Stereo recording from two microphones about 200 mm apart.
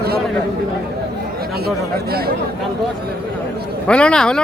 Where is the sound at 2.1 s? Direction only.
50° right (ahead or behind).